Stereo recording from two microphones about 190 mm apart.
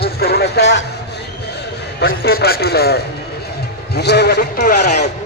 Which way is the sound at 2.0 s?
50° left (ahead or behind).